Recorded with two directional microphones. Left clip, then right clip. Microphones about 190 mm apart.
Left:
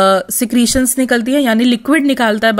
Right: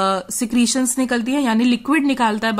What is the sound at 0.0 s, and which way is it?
Speech, 25° left (ahead or behind).